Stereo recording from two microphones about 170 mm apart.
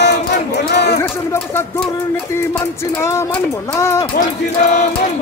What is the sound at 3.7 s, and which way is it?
Speech, 15° left (ahead or behind).